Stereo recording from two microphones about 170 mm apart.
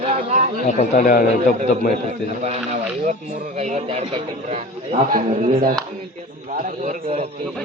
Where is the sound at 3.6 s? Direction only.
40° right (ahead or behind).